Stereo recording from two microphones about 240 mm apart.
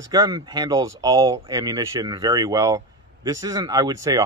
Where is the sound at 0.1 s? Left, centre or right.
Centre.